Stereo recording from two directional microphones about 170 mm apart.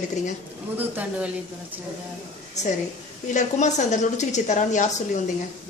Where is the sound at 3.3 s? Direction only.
45° left (ahead or behind).